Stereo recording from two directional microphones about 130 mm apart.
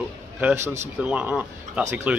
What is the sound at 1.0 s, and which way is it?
A man's voice, 10° right (ahead or behind).